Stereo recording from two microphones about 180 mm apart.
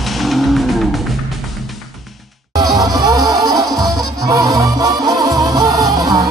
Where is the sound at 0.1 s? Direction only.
Centre (ahead or behind).